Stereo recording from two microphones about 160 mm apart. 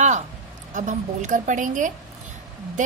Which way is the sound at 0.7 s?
50° right (ahead or behind).